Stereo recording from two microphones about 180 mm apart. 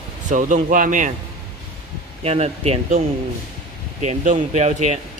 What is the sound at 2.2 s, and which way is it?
Speech, 35° right (ahead or behind).